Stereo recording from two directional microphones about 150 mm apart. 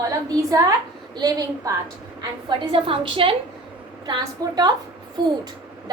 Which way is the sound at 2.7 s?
35° right (ahead or behind).